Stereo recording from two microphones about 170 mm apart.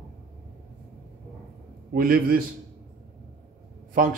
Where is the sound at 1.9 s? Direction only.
55° right (ahead or behind).